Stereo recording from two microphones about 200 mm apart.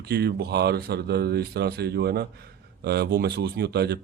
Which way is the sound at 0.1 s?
55° right (ahead or behind).